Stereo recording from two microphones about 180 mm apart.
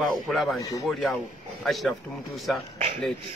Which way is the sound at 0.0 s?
Centre (ahead or behind).